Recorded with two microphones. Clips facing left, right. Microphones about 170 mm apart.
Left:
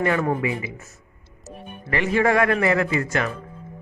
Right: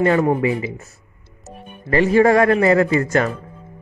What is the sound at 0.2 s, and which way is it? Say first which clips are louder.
A man's voice: right 6 dB; 30° right (ahead or behind).